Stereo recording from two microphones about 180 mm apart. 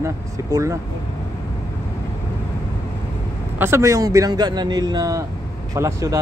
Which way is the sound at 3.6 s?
15° right (ahead or behind).